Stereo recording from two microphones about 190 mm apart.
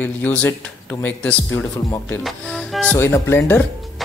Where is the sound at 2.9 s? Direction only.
15° left (ahead or behind).